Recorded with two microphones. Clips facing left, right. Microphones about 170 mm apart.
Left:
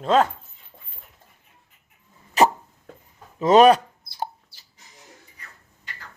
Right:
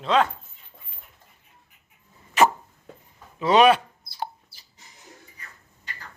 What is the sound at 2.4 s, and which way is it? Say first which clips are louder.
Dog: left 1 dB; 40° left (ahead or behind).